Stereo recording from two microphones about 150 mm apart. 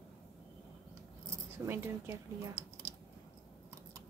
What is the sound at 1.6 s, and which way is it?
Speech, 15° right (ahead or behind).